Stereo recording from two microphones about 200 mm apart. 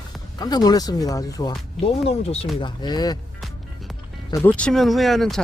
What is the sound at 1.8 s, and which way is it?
Speech, 30° left (ahead or behind).